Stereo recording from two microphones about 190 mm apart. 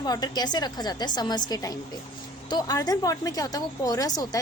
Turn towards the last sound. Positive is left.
turn(degrees=20)  # may be behind; listen again after turning